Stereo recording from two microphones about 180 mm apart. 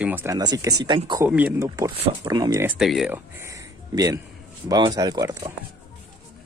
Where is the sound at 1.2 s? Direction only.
10° right (ahead or behind).